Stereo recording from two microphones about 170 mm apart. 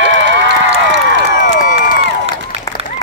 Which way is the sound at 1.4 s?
50° left (ahead or behind).